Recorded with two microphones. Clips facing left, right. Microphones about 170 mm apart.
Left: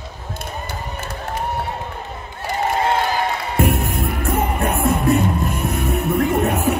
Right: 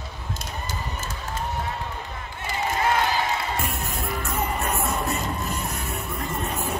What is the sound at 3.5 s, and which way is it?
Music, 55° left (ahead or behind).